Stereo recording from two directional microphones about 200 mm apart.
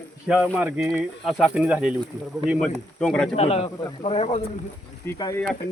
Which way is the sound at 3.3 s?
30° left (ahead or behind).